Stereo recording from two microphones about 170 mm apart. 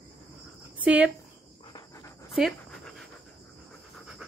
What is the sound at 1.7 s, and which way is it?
Insect, 20° left (ahead or behind).